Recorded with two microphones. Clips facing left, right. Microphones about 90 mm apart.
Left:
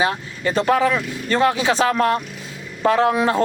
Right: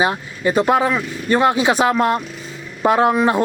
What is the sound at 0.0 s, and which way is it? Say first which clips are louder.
A man's voice: right 2 dB; 20° right (ahead or behind).